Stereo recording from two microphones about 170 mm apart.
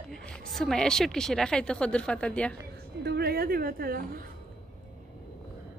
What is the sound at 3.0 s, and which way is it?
A woman's voice, 70° right (ahead or behind).